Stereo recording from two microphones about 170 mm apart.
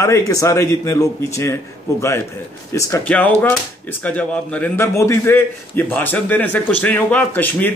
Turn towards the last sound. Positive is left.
turn(degrees=10)  # may be behind; listen again after turning